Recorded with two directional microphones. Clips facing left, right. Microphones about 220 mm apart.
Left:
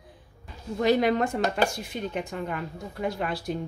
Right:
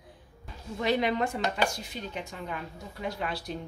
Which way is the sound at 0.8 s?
45° left (ahead or behind).